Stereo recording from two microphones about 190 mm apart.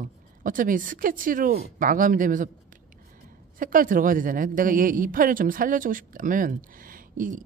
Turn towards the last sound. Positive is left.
turn(degrees=-45)  # may be behind; listen again after turning